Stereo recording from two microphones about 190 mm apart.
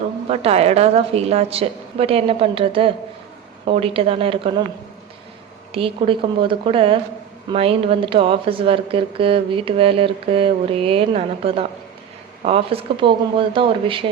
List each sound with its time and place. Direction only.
0.3 s a woman's voice: 30° right (ahead or behind)
5.7 s speech: 30° right (ahead or behind)